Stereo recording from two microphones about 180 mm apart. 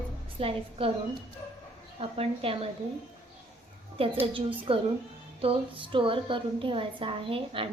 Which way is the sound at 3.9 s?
30° right (ahead or behind).